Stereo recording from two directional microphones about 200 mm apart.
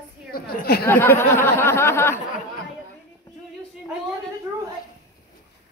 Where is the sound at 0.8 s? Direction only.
10° left (ahead or behind).